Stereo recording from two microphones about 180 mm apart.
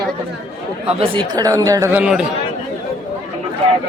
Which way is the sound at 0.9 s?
25° right (ahead or behind).